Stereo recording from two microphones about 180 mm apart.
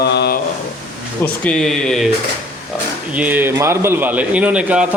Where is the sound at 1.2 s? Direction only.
5° left (ahead or behind).